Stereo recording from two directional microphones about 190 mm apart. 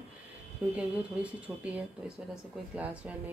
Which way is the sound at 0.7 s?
5° right (ahead or behind).